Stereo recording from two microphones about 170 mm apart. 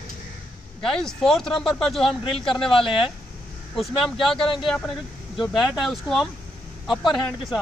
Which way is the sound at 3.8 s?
Centre (ahead or behind).